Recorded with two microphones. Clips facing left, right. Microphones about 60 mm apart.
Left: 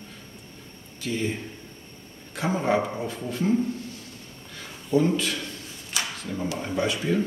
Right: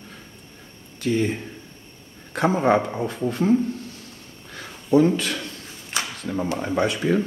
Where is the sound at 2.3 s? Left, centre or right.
Right.